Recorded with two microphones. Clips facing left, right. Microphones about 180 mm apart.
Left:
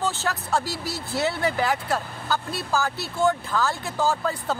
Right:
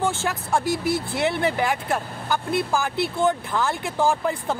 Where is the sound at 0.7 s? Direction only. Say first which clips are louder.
Right 8 dB; 50° right (ahead or behind).